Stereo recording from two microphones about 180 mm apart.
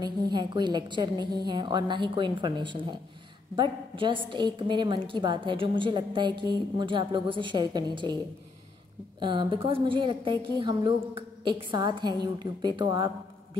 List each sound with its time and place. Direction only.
0.0 s a woman's voice: 25° right (ahead or behind)
9.2 s a woman's voice: 30° right (ahead or behind)